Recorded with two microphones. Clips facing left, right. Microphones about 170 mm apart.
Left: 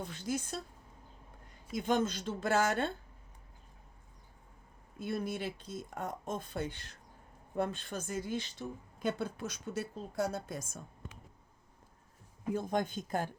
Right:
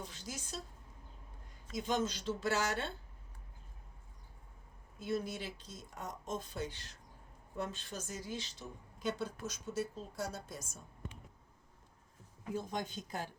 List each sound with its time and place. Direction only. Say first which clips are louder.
0.0 s a sound: left 9 dB; 55° left (ahead or behind)
1.7 s speech: left 4 dB; 55° left (ahead or behind)
4.9 s a woman's voice: left 2 dB; 55° left (ahead or behind)
12.5 s speech: left 5 dB; 55° left (ahead or behind)